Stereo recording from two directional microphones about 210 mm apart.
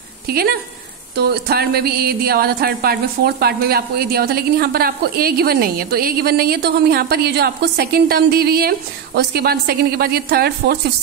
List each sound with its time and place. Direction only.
0.3 s speech: 45° right (ahead or behind)